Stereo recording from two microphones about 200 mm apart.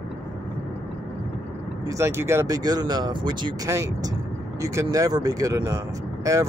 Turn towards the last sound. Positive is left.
turn(degrees=-15)  # may be behind; listen again after turning